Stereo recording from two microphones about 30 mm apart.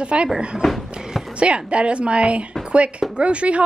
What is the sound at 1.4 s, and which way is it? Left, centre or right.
A woman's voice, right.